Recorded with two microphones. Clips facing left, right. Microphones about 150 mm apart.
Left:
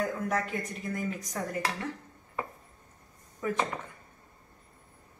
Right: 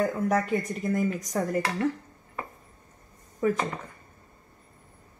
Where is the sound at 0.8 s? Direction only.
40° right (ahead or behind).